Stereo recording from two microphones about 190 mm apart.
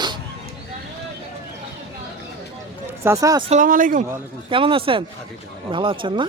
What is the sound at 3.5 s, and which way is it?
Speech, 45° right (ahead or behind).